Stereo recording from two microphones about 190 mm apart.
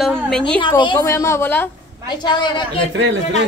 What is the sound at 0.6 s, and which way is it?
Speech, 25° left (ahead or behind).